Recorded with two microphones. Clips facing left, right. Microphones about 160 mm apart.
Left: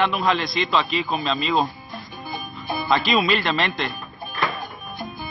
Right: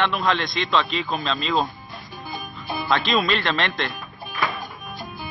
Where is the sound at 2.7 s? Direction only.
5° left (ahead or behind).